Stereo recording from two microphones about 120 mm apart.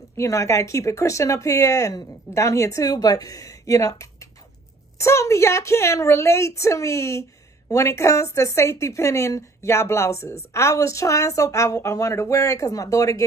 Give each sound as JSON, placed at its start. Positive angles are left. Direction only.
{"t": 0.2, "sound": "a woman's voice", "side_deg": 25}